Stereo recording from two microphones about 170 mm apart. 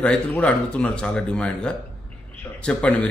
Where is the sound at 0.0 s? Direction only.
10° left (ahead or behind).